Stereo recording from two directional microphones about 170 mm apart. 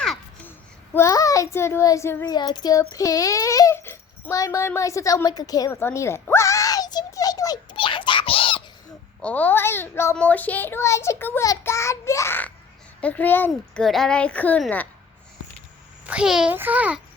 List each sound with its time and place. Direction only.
0.0 s a sound: 5° left (ahead or behind)
0.9 s child singing: 20° left (ahead or behind)
9.2 s a child's voice: 10° left (ahead or behind)
16.0 s a child's voice: 5° right (ahead or behind)